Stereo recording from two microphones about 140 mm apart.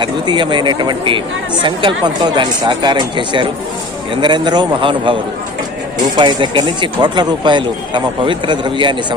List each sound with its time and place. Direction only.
0.0 s speech: 35° right (ahead or behind)
6.1 s speech: 35° right (ahead or behind)